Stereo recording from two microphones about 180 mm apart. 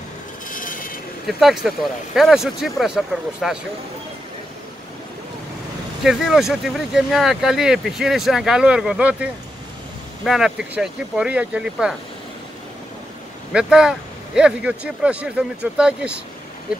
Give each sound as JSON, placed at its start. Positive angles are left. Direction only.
{"t": 0.5, "sound": "a sound", "side_deg": 50}
{"t": 1.2, "sound": "speech", "side_deg": 0}
{"t": 6.0, "sound": "speech", "side_deg": 0}
{"t": 13.5, "sound": "speech", "side_deg": -5}